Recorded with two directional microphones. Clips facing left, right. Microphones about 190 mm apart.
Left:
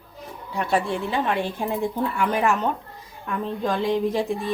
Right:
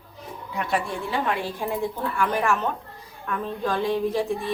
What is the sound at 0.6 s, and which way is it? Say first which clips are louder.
Speech: left 3 dB; 25° left (ahead or behind).